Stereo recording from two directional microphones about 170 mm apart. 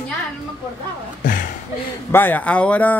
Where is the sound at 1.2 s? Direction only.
55° left (ahead or behind).